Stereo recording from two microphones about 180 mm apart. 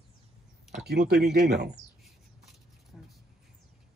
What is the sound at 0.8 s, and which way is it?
Speech, 60° right (ahead or behind).